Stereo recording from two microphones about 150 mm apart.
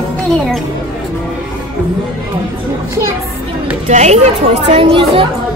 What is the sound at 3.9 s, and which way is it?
Speech, 50° right (ahead or behind).